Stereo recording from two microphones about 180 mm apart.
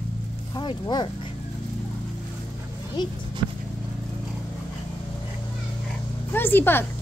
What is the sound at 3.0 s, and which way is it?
Speech, 25° left (ahead or behind).